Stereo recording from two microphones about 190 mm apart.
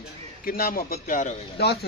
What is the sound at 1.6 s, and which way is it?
Speech, 60° left (ahead or behind).